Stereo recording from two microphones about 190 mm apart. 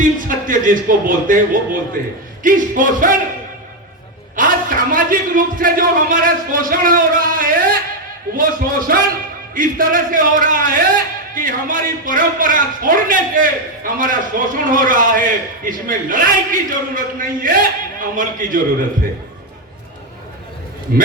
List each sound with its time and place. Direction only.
0.0 s a man's voice: 45° right (ahead or behind)
4.4 s a man's voice: 45° right (ahead or behind)